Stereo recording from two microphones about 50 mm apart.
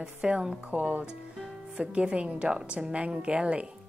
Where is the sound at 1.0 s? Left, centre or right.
Centre.